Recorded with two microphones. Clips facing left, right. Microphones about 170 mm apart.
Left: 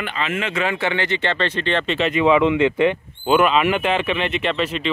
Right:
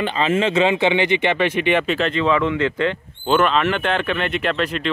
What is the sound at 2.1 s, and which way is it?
Speech, 15° left (ahead or behind).